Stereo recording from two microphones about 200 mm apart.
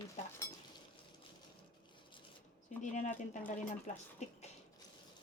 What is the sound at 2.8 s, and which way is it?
Speech, 40° left (ahead or behind).